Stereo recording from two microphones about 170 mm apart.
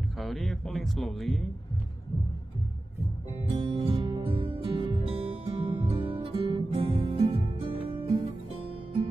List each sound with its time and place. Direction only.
0.2 s speech: centre (ahead or behind)
3.4 s music: 30° right (ahead or behind)